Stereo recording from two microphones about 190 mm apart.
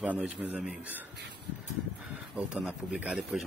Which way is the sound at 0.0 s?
5° right (ahead or behind).